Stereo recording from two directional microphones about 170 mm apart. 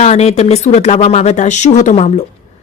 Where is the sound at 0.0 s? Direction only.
40° left (ahead or behind).